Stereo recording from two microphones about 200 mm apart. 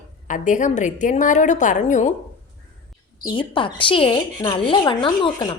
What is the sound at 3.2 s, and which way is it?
A woman's voice, 25° left (ahead or behind).